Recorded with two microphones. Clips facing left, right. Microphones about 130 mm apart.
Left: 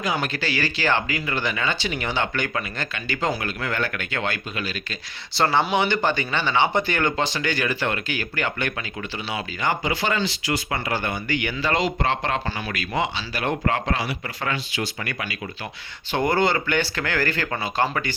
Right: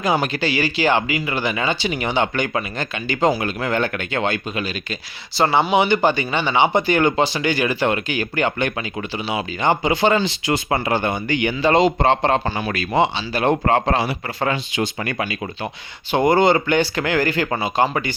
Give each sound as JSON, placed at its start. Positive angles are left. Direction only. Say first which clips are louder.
{"t": 0.1, "sound": "speech", "louder": "right 7 dB", "side_deg": -20}
{"t": 5.3, "sound": "speech", "louder": "right 3 dB", "side_deg": 0}
{"t": 5.7, "sound": "speech", "louder": "right 5 dB", "side_deg": -10}
{"t": 16.1, "sound": "speech", "louder": "right 6 dB", "side_deg": -15}